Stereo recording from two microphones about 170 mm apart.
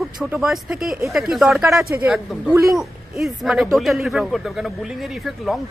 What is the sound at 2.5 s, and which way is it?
Speech, 20° right (ahead or behind).